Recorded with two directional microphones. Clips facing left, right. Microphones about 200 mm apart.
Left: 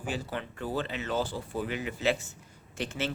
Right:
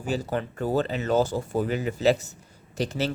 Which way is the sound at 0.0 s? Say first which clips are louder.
Right 7 dB; 40° right (ahead or behind).